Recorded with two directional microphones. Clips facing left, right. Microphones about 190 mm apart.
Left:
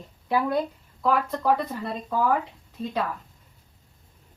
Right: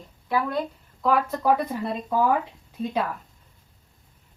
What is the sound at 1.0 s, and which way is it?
Speech, 5° right (ahead or behind).